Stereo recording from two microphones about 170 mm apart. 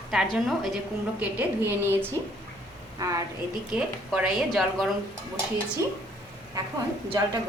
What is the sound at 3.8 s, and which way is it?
A woman's voice, 5° right (ahead or behind).